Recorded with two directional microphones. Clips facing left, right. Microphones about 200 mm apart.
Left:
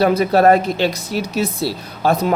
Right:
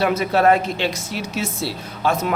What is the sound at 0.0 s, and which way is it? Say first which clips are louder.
Speech: left 4 dB; 35° left (ahead or behind).